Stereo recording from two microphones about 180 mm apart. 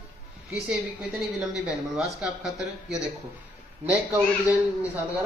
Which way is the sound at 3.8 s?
35° right (ahead or behind).